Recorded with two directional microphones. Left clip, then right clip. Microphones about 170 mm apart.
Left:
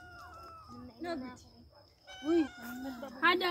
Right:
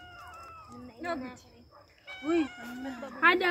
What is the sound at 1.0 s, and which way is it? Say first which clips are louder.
Speech: right 4 dB; 30° right (ahead or behind).